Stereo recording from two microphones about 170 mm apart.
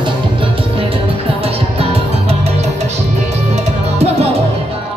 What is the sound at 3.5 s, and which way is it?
Music, 35° right (ahead or behind).